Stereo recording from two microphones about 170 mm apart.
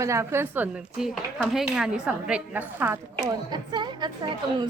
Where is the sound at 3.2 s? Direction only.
25° right (ahead or behind).